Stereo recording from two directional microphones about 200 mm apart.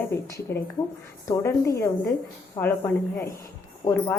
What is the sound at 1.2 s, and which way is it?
A woman's voice, 15° left (ahead or behind).